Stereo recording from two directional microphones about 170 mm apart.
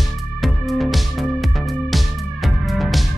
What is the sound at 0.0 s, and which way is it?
Music, centre (ahead or behind).